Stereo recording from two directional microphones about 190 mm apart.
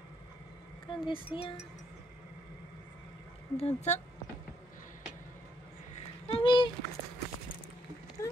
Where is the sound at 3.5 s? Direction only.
35° left (ahead or behind).